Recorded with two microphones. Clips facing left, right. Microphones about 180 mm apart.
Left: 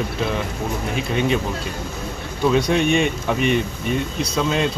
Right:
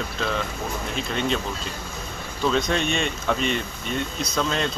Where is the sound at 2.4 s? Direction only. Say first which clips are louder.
Left 5 dB; 15° left (ahead or behind).